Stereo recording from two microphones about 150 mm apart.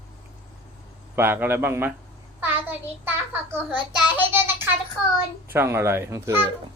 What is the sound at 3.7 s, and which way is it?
A child's voice, 10° right (ahead or behind).